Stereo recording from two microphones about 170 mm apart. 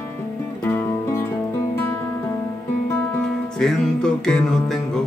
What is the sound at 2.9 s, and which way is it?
Music, 5° left (ahead or behind).